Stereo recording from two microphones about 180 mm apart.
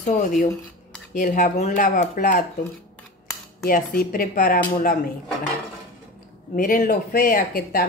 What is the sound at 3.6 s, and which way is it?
Dishes, 55° left (ahead or behind).